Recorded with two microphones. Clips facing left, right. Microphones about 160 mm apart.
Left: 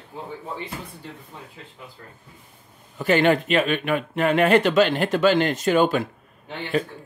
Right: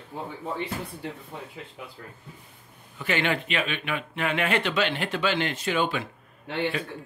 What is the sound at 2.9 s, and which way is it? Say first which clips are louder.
Speech: left 8 dB; 40° left (ahead or behind).